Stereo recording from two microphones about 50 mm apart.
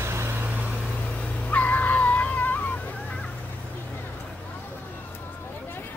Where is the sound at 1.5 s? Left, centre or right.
Left.